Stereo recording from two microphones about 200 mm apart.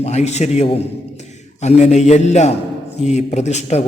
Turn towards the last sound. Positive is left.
turn(degrees=35)  # may be behind; listen again after turning